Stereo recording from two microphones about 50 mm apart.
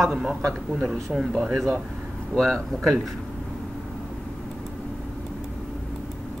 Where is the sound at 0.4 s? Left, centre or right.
Centre.